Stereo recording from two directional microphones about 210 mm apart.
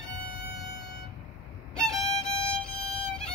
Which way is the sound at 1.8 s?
5° left (ahead or behind).